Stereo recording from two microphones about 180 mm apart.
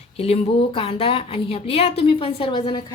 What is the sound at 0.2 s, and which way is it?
A woman's voice, 30° left (ahead or behind).